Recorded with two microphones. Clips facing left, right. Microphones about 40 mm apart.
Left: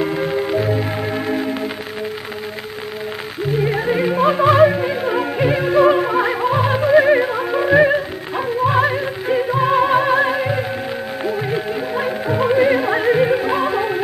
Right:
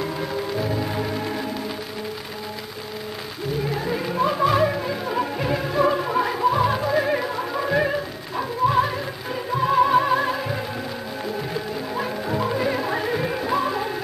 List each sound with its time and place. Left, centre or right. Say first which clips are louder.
0.0 s music: left 7 dB; left
3.6 s music: left 9 dB; left
11.9 s music: left 5 dB; left